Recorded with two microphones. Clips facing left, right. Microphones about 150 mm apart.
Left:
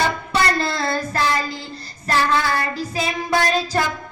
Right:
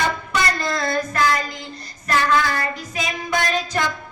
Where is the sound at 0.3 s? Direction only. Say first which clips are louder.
Left 3 dB; 30° left (ahead or behind).